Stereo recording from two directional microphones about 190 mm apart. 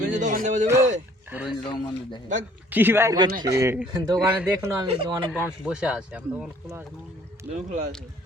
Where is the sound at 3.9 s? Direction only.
25° right (ahead or behind).